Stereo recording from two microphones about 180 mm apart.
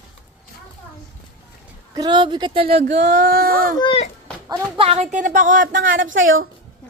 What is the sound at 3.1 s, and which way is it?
Speech, 55° right (ahead or behind).